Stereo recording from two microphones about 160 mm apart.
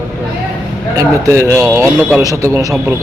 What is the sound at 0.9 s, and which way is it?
Speech, 20° right (ahead or behind).